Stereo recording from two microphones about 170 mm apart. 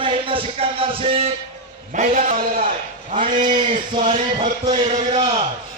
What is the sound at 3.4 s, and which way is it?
Speech, 25° right (ahead or behind).